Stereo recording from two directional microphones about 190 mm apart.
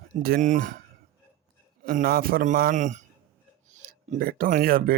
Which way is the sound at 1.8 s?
50° right (ahead or behind).